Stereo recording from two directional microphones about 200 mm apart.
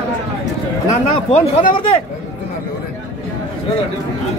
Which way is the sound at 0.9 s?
35° left (ahead or behind).